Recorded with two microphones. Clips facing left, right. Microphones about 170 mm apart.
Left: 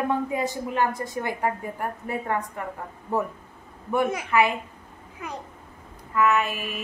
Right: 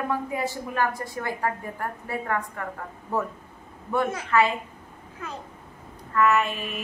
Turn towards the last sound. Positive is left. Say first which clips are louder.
# even
turn(degrees=5)  # may be behind; listen again after turning